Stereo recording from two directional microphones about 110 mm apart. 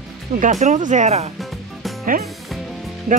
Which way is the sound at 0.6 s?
90° right.